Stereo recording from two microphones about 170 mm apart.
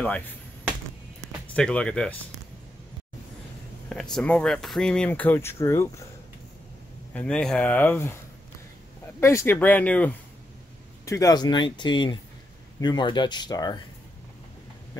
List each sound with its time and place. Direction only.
1.5 s speech: 5° left (ahead or behind)
3.9 s speech: 5° left (ahead or behind)
7.2 s speech: 5° left (ahead or behind)
9.2 s speech: 15° left (ahead or behind)
11.1 s speech: 20° left (ahead or behind)